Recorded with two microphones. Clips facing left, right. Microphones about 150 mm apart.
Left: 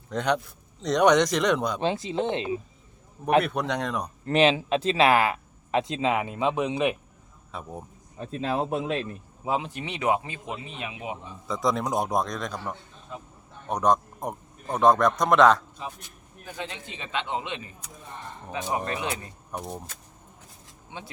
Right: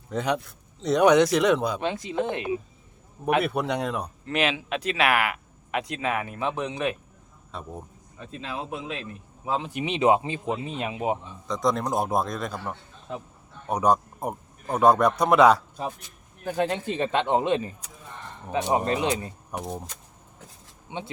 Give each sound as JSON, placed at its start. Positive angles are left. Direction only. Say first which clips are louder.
{"t": 0.1, "sound": "speech", "louder": "left 1 dB", "side_deg": -5}
{"t": 1.8, "sound": "speech", "louder": "left 1 dB", "side_deg": 30}
{"t": 3.4, "sound": "speech", "louder": "right 2 dB", "side_deg": -5}
{"t": 4.3, "sound": "speech", "louder": "left 6 dB", "side_deg": 30}
{"t": 7.5, "sound": "speech", "louder": "even", "side_deg": 0}
{"t": 8.2, "sound": "a man's voice", "louder": "left 7 dB", "side_deg": 45}
{"t": 9.6, "sound": "speech", "louder": "right 5 dB", "side_deg": -15}
{"t": 11.4, "sound": "a man's voice", "louder": "right 1 dB", "side_deg": 0}
{"t": 16.4, "sound": "a man's voice", "louder": "right 11 dB", "side_deg": -50}
{"t": 18.5, "sound": "speech", "louder": "right 6 dB", "side_deg": -30}
{"t": 19.5, "sound": "speech", "louder": "right 1 dB", "side_deg": -5}
{"t": 20.9, "sound": "speech", "louder": "right 6 dB", "side_deg": -15}